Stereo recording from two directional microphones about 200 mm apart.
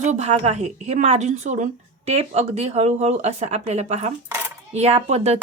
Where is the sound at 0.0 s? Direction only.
35° right (ahead or behind).